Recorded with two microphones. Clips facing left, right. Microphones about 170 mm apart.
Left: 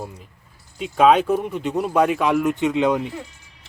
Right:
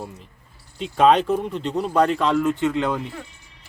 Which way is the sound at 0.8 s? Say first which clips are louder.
Left 1 dB; 5° left (ahead or behind).